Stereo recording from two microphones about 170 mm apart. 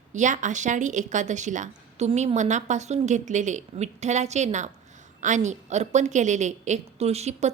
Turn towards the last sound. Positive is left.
turn(degrees=-40)  # may be behind; listen again after turning